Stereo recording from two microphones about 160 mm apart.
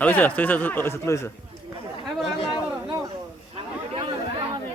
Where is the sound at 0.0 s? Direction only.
10° left (ahead or behind).